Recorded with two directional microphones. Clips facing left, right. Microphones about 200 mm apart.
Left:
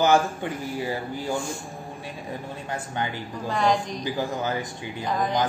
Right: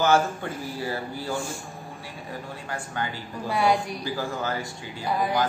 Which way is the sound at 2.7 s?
20° left (ahead or behind).